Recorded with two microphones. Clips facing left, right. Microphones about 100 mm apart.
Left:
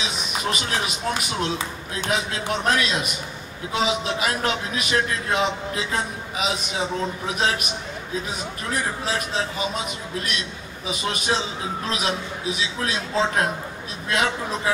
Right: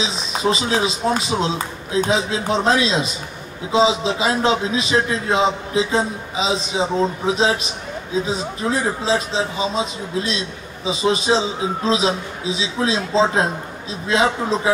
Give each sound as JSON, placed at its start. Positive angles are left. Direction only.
{"t": 0.0, "sound": "a man's voice", "side_deg": -30}